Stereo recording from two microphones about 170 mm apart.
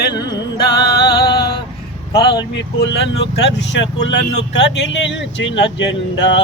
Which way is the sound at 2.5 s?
85° left.